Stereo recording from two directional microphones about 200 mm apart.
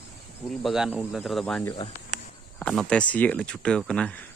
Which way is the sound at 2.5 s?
5° left (ahead or behind).